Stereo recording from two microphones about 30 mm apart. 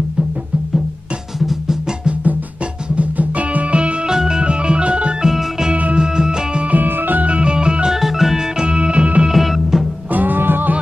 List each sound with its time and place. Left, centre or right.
3.0 s music: right
3.7 s music: right
4.1 s music: centre
4.4 s music: right
5.2 s organ: centre
5.9 s music: right
6.7 s music: right
7.2 s organ: right
7.5 s music: right
7.9 s music: centre
8.5 s music: right
9.3 s music: centre
10.1 s music: right